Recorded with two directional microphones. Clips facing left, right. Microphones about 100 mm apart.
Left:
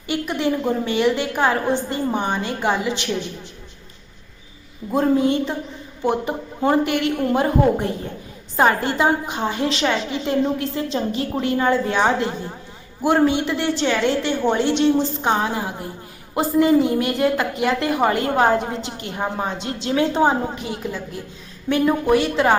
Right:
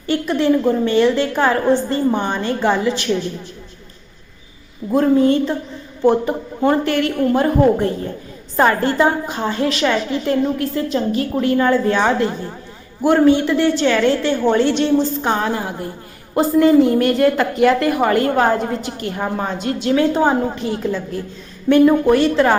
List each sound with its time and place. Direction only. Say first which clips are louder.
0.1 s a woman's voice: right 6 dB; 15° left (ahead or behind)
4.9 s a woman's voice: right 4 dB; 15° left (ahead or behind)
6.7 s a woman's voice: right 2 dB; 15° left (ahead or behind)